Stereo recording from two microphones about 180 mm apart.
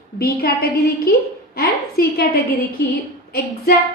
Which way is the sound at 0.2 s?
60° left (ahead or behind).